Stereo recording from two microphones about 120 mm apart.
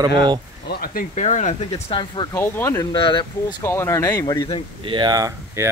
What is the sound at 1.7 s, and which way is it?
Speech, 40° left (ahead or behind).